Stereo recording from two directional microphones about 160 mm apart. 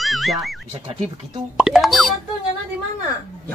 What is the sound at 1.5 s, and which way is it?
Speech, 5° right (ahead or behind).